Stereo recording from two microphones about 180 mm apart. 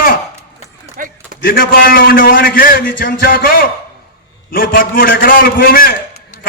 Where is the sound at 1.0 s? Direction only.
50° right (ahead or behind).